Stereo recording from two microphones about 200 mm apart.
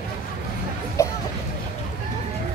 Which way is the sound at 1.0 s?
15° left (ahead or behind).